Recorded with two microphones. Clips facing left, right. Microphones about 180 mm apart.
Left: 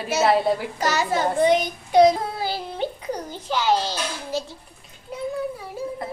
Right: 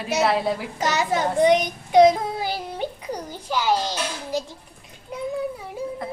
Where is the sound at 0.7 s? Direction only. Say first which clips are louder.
Even; 20° right (ahead or behind).